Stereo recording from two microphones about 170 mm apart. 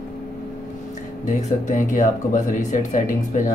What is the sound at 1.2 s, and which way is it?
Speech, 45° left (ahead or behind).